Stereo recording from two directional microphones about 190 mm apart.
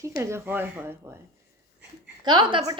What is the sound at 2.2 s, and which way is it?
Female singing, 25° right (ahead or behind).